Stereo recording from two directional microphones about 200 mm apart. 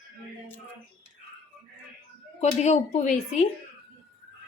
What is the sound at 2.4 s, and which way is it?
A woman's voice, 35° left (ahead or behind).